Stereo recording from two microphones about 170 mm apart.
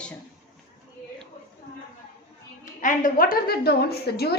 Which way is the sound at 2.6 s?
50° left (ahead or behind).